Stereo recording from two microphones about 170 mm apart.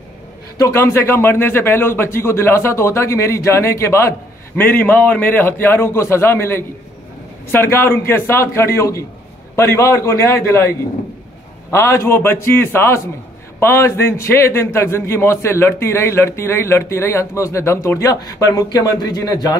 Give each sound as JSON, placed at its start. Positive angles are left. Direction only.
{"t": 0.6, "sound": "a man's voice", "side_deg": 15}
{"t": 11.7, "sound": "a man's voice", "side_deg": 15}